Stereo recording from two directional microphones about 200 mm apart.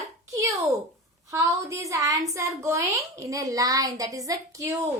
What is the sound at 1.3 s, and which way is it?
A woman's voice, 15° right (ahead or behind).